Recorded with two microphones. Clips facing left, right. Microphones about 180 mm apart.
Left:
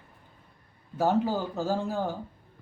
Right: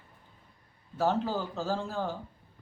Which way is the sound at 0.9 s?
15° left (ahead or behind).